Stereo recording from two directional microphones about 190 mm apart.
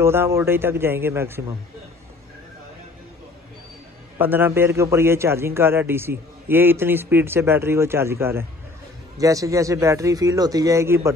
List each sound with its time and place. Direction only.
0.0 s a man's voice: 15° right (ahead or behind)
4.2 s a man's voice: 10° right (ahead or behind)